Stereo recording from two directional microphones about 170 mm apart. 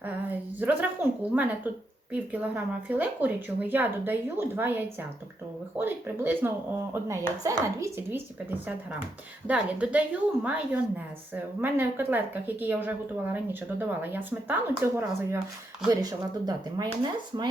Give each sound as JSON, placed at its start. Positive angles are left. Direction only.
{"t": 0.6, "sound": "a woman's voice", "side_deg": -10}